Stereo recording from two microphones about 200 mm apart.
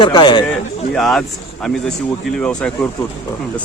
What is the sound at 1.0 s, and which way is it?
Speech, centre (ahead or behind).